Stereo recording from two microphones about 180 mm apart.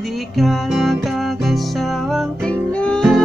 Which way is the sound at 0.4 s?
Centre (ahead or behind).